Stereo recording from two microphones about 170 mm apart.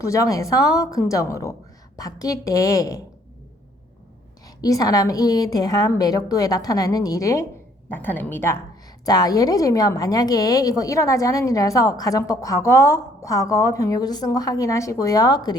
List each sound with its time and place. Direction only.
0.0 s a woman's voice: 20° left (ahead or behind)
4.4 s a woman's voice: 20° left (ahead or behind)